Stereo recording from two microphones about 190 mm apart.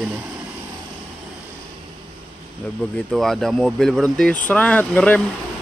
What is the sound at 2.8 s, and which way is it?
Speech, 5° left (ahead or behind).